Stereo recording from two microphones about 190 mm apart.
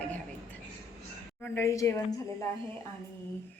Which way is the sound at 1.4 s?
15° left (ahead or behind).